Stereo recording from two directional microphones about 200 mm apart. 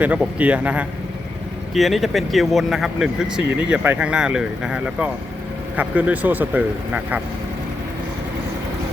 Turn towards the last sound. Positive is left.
turn(degrees=-5)  # may be behind; listen again after turning